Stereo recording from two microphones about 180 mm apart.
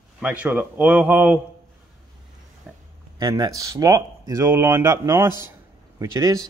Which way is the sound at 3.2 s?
20° right (ahead or behind).